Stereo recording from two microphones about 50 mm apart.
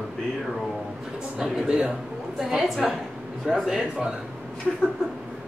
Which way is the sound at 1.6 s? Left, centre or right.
Centre.